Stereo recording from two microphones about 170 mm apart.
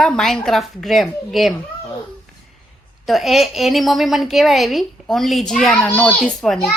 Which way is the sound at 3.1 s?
Centre (ahead or behind).